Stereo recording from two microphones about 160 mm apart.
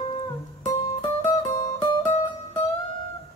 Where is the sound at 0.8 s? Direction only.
25° left (ahead or behind).